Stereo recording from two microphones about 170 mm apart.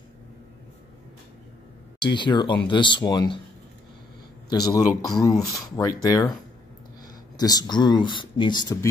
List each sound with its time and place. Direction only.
2.0 s speech: 25° left (ahead or behind)
4.5 s speech: 20° left (ahead or behind)
7.3 s speech: 25° left (ahead or behind)